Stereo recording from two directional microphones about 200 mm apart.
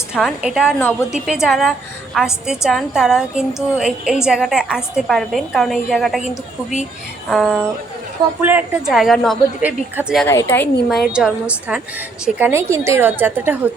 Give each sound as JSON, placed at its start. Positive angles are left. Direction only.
{"t": 0.1, "sound": "a woman's voice", "side_deg": 0}
{"t": 6.2, "sound": "a woman's voice", "side_deg": 35}
{"t": 7.3, "sound": "a woman's voice", "side_deg": 0}
{"t": 8.4, "sound": "a woman's voice", "side_deg": -10}
{"t": 10.2, "sound": "a woman's voice", "side_deg": 10}
{"t": 11.1, "sound": "a woman's voice", "side_deg": -5}